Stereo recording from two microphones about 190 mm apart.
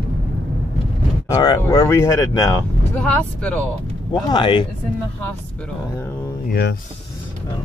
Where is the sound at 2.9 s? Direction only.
5° left (ahead or behind).